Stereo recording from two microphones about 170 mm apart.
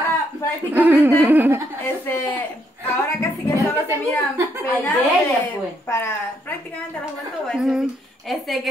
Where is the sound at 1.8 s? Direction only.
10° left (ahead or behind).